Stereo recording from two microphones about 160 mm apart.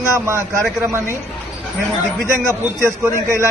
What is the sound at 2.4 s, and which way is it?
A man's voice, 15° right (ahead or behind).